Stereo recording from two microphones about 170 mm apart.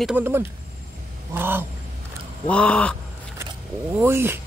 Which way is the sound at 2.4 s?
5° left (ahead or behind).